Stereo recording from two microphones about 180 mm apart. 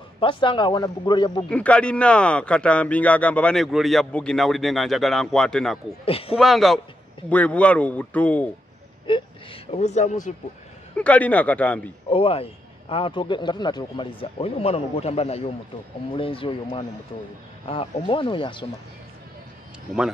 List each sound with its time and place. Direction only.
0.2 s speech: 30° left (ahead or behind)
1.5 s speech: 5° left (ahead or behind)
6.0 s speech: 30° left (ahead or behind)
6.3 s speech: centre (ahead or behind)
9.0 s speech: 30° left (ahead or behind)
11.0 s speech: 10° left (ahead or behind)
12.1 s speech: 30° left (ahead or behind)